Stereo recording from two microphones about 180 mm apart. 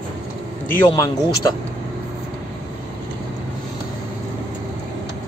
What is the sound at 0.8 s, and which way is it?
Speech, 20° left (ahead or behind).